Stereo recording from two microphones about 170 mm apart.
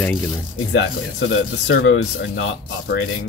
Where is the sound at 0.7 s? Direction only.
90° left.